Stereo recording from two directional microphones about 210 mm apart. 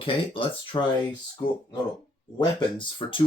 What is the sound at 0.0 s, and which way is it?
Speech, 25° left (ahead or behind).